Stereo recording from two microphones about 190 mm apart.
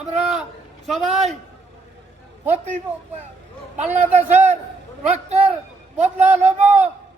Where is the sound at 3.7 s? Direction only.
35° right (ahead or behind).